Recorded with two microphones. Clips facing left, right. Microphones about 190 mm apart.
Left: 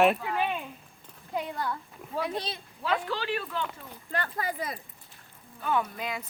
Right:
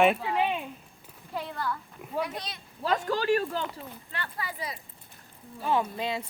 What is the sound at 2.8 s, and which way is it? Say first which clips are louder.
Speech: right 4 dB; 45° right (ahead or behind).